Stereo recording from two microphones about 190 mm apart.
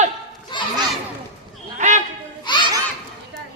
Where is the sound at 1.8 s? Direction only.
40° right (ahead or behind).